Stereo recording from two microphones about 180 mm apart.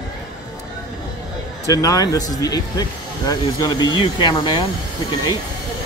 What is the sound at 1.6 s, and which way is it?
Speech, 20° left (ahead or behind).